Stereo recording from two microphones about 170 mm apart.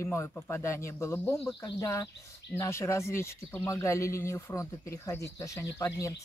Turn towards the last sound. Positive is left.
turn(degrees=15)  # may be behind; listen again after turning